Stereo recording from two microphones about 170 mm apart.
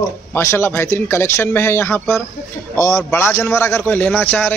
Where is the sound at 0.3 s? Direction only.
15° left (ahead or behind).